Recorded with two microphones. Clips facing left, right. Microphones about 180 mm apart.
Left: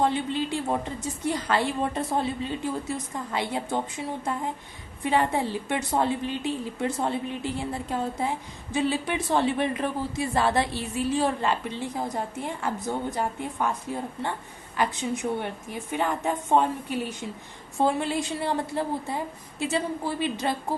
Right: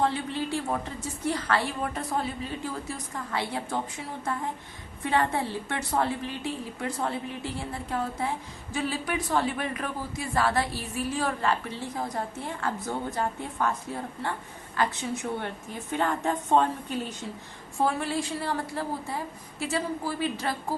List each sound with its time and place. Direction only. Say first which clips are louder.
0.0 s speech: left 3 dB; 20° left (ahead or behind)
5.0 s speech: left 2 dB; 15° left (ahead or behind)
14.8 s a woman's voice: left 2 dB; 15° left (ahead or behind)